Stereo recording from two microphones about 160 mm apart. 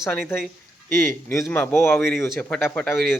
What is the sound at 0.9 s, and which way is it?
Speech, 15° left (ahead or behind).